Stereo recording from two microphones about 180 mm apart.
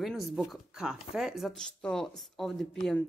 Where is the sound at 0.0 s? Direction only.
Centre (ahead or behind).